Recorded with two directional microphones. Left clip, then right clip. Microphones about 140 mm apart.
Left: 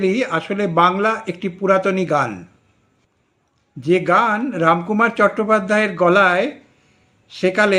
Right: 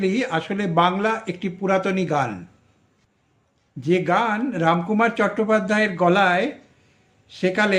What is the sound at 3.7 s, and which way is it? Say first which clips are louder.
A man's voice: left 5 dB; 10° right (ahead or behind).